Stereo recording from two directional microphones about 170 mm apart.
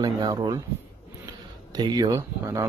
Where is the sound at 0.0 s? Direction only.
25° right (ahead or behind).